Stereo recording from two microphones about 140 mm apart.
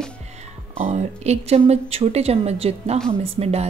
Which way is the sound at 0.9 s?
50° right (ahead or behind).